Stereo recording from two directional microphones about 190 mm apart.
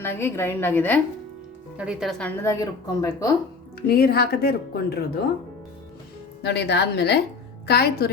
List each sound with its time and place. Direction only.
0.0 s a woman's voice: 10° left (ahead or behind)
1.7 s speech: 5° right (ahead or behind)
2.4 s a woman's voice: 15° left (ahead or behind)
3.8 s speech: 55° left (ahead or behind)
6.4 s speech: 60° left (ahead or behind)